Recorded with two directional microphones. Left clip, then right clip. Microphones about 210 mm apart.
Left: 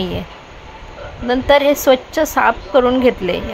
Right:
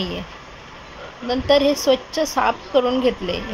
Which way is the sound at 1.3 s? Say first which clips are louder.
Left 5 dB; 15° left (ahead or behind).